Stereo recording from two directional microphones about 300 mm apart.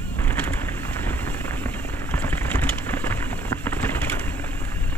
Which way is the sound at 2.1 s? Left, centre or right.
Centre.